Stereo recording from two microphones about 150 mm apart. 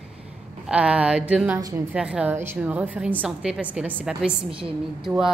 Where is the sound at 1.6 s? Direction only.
25° right (ahead or behind).